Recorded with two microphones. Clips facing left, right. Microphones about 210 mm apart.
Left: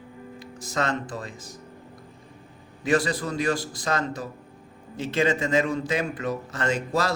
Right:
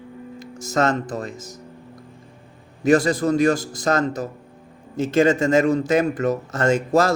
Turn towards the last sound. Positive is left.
turn(degrees=-45)  # may be behind; listen again after turning